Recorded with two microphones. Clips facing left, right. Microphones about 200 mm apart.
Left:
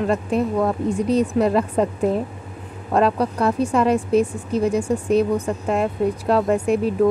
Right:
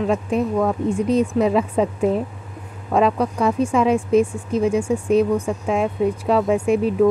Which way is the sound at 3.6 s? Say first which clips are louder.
Right 1 dB; 10° right (ahead or behind).